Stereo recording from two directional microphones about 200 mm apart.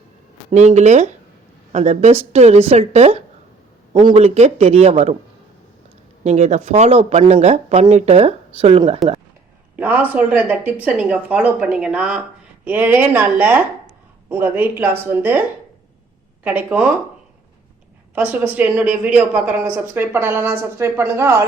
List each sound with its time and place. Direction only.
0.5 s speech: 35° right (ahead or behind)
6.2 s speech: 35° right (ahead or behind)
9.7 s speech: 10° right (ahead or behind)
18.1 s speech: 10° right (ahead or behind)